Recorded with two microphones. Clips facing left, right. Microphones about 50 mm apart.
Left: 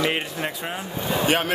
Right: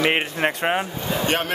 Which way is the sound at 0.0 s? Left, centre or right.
Right.